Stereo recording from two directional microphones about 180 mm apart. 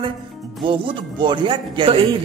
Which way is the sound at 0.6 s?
30° right (ahead or behind).